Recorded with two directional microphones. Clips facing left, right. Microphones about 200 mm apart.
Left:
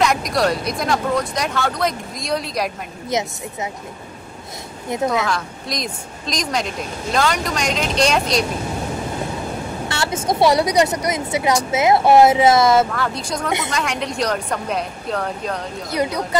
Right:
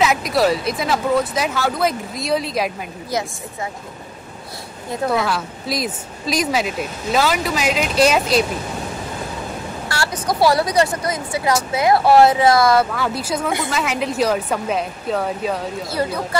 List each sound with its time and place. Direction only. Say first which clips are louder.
0.0 s speech: right 1 dB; 5° right (ahead or behind)
4.9 s speech: even; 20° left (ahead or behind)
5.2 s speech: right 1 dB; 5° right (ahead or behind)
9.8 s speech: left 1 dB; 25° left (ahead or behind)
12.9 s speech: right 2 dB; 5° right (ahead or behind)
15.9 s speech: left 2 dB; 15° left (ahead or behind)